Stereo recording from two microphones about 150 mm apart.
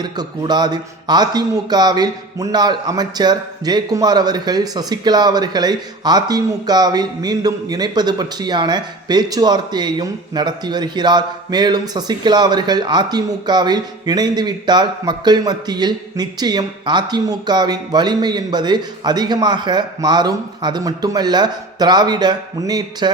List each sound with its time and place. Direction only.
0.0 s a man's voice: 30° right (ahead or behind)